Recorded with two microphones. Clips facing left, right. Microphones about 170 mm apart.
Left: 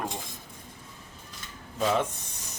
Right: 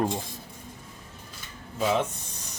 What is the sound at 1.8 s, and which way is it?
Speech, 5° right (ahead or behind).